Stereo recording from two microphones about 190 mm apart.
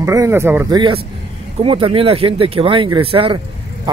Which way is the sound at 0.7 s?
25° right (ahead or behind).